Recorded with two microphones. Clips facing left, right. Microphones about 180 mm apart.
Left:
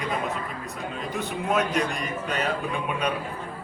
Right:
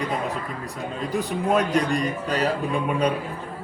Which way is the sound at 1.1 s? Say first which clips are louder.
Right 4 dB; 35° right (ahead or behind).